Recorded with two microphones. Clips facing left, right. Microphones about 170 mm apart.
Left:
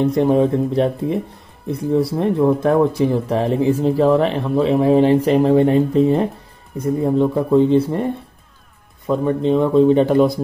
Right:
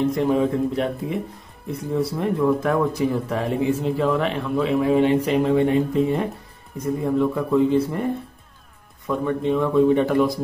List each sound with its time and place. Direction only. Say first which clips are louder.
0.1 s speech: left 5 dB; 35° left (ahead or behind)